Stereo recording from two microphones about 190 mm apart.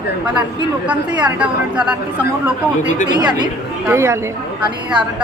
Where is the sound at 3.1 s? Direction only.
20° right (ahead or behind).